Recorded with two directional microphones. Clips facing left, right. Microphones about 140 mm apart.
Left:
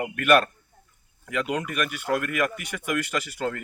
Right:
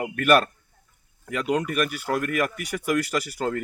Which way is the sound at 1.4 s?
35° right (ahead or behind).